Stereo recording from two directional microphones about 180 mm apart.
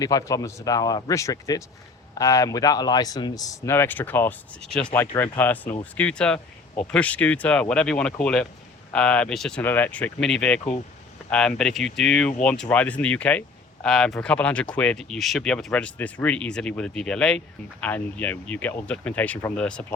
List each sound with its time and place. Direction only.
0.0 s speech: 20° left (ahead or behind)